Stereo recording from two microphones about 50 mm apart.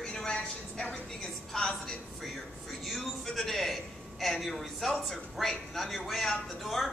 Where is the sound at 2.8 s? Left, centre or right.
Centre.